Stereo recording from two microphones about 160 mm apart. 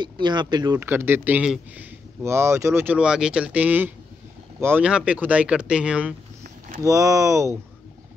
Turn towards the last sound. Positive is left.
turn(degrees=-15)  # may be behind; listen again after turning